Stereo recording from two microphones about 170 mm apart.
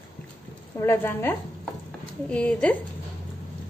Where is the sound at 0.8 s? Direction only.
15° left (ahead or behind).